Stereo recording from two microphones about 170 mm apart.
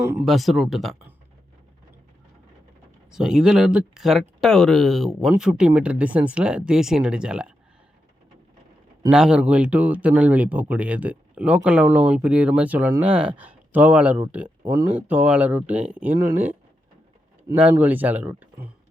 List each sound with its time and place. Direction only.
0.3 s speech: centre (ahead or behind)
3.1 s speech: 5° right (ahead or behind)
9.0 s speech: 5° right (ahead or behind)
14.6 s speech: 20° right (ahead or behind)
14.8 s speech: 10° right (ahead or behind)
17.5 s speech: 10° right (ahead or behind)